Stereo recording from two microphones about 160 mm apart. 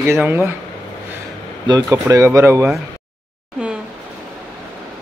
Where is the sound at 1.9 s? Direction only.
15° right (ahead or behind).